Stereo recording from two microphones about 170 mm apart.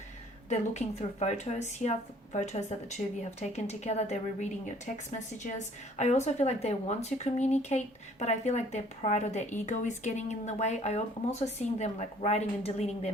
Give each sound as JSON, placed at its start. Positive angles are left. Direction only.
{"t": 0.5, "sound": "a woman's voice", "side_deg": 40}
{"t": 5.5, "sound": "a woman's voice", "side_deg": 40}